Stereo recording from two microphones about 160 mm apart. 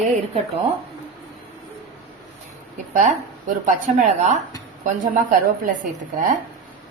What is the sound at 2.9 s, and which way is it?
A woman's voice, 50° right (ahead or behind).